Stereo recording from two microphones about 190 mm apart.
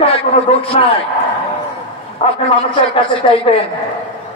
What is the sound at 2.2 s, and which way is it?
A man's voice, 35° left (ahead or behind).